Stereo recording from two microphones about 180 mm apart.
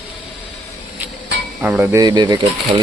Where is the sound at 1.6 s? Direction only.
10° right (ahead or behind).